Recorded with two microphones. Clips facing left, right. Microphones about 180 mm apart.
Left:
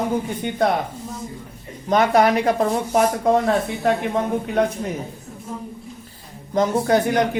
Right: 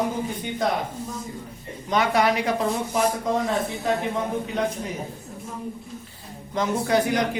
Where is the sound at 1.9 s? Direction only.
50° left (ahead or behind).